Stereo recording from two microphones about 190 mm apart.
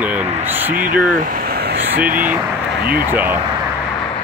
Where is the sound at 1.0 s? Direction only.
45° right (ahead or behind).